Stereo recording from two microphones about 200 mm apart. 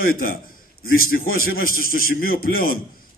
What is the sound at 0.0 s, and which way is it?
A man's voice, 45° left (ahead or behind).